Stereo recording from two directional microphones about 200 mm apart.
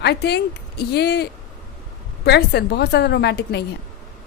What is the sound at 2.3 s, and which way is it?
A woman's voice, 55° left (ahead or behind).